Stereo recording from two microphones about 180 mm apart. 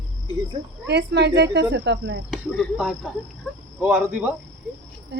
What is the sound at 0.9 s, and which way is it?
Speech, 70° right (ahead or behind).